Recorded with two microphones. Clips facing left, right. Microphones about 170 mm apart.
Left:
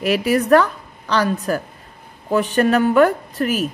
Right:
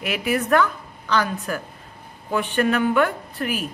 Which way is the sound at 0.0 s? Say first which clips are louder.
Left 6 dB; 40° left (ahead or behind).